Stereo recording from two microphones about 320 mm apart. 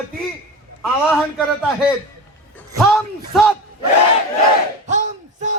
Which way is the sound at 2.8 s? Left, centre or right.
Centre.